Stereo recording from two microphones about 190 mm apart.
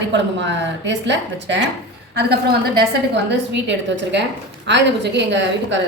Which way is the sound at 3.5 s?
70° right (ahead or behind).